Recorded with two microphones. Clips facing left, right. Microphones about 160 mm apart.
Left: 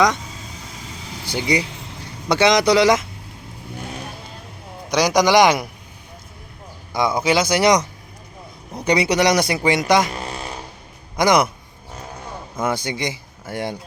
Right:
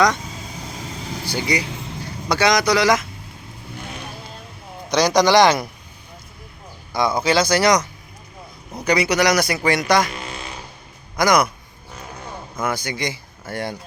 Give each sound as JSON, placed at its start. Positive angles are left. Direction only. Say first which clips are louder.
{"t": 1.3, "sound": "speech", "louder": "left 2 dB", "side_deg": 20}
{"t": 4.9, "sound": "a man's voice", "louder": "even", "side_deg": 15}
{"t": 6.9, "sound": "speech", "louder": "even", "side_deg": 20}
{"t": 10.1, "sound": "a sound", "louder": "left 3 dB", "side_deg": 35}
{"t": 11.2, "sound": "speech", "louder": "left 1 dB", "side_deg": 25}
{"t": 12.5, "sound": "speech", "louder": "left 2 dB", "side_deg": 25}